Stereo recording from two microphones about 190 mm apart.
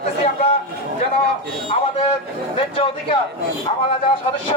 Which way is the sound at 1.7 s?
25° left (ahead or behind).